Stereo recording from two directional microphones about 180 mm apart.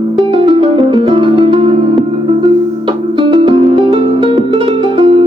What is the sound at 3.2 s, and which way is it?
Music, 30° right (ahead or behind).